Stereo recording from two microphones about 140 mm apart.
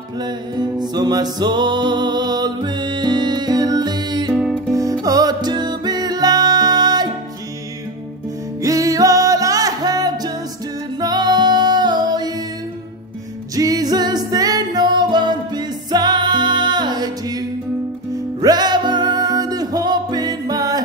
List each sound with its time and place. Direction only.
0.2 s music: 30° right (ahead or behind)
4.3 s music: 5° right (ahead or behind)
5.0 s music: 25° right (ahead or behind)
8.6 s music: 25° right (ahead or behind)
13.6 s music: 25° right (ahead or behind)